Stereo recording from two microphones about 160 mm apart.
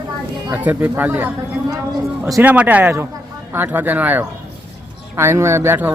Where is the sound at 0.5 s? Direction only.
10° right (ahead or behind).